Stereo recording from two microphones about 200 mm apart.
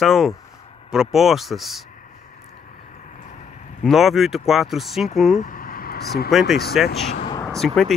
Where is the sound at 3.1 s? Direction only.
40° left (ahead or behind).